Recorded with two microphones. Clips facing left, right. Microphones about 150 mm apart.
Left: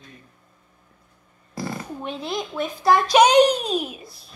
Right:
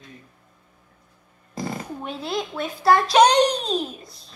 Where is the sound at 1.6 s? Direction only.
20° right (ahead or behind).